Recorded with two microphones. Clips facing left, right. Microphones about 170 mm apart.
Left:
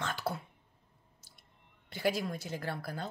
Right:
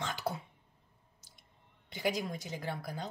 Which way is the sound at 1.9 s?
15° right (ahead or behind).